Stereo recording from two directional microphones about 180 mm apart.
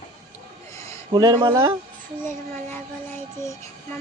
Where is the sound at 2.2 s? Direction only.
10° left (ahead or behind).